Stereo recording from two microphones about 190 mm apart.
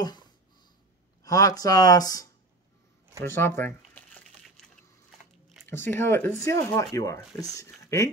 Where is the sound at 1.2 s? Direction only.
20° left (ahead or behind).